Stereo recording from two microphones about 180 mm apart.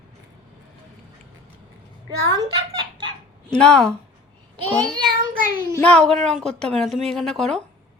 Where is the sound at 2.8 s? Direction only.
25° right (ahead or behind).